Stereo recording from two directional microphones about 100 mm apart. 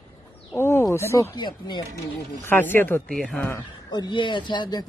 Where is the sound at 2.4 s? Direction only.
20° left (ahead or behind).